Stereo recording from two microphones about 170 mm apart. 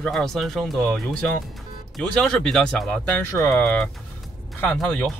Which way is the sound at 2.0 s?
5° left (ahead or behind).